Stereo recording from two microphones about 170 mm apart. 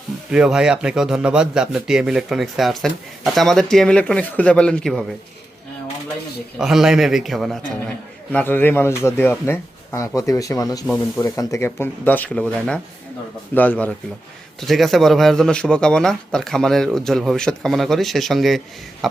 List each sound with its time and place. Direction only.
0.3 s a man's voice: 5° right (ahead or behind)
6.6 s a man's voice: centre (ahead or behind)
8.3 s a man's voice: 10° left (ahead or behind)